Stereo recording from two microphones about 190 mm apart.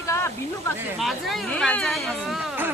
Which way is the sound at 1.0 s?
Centre (ahead or behind).